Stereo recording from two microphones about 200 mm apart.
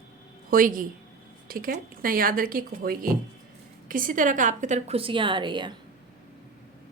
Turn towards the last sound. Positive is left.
turn(degrees=-25)  # may be behind; listen again after turning